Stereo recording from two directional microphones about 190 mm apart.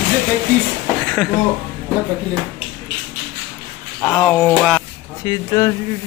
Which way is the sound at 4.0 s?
10° left (ahead or behind).